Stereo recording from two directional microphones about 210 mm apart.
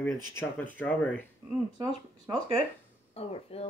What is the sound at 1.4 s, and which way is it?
Speech, 15° right (ahead or behind).